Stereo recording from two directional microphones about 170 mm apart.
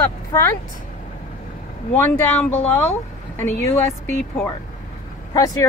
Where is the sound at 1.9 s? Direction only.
10° left (ahead or behind).